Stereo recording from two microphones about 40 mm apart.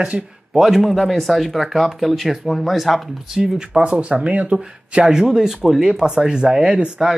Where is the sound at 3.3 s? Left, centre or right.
Right.